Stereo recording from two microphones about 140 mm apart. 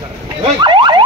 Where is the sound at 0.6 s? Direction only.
35° right (ahead or behind).